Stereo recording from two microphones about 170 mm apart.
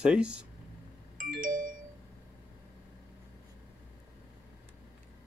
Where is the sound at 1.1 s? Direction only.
55° right (ahead or behind).